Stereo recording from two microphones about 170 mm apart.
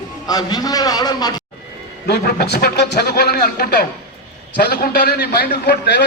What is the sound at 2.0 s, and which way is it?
Speech, 70° left (ahead or behind).